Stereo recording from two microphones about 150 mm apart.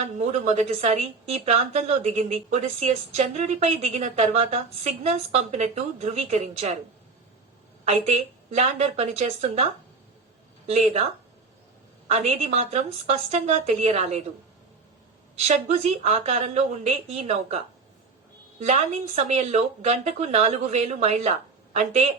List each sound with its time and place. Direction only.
0.2 s a woman's voice: 50° right (ahead or behind)
7.9 s a woman's voice: 50° right (ahead or behind)
10.7 s a woman's voice: 45° right (ahead or behind)
12.0 s a woman's voice: 45° right (ahead or behind)
15.4 s a woman's voice: 45° right (ahead or behind)
18.6 s a woman's voice: 50° right (ahead or behind)